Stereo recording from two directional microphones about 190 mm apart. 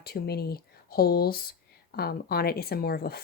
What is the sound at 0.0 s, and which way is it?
Speech, 55° left (ahead or behind).